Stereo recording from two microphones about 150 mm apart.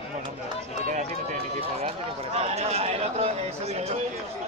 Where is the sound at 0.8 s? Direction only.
60° right (ahead or behind).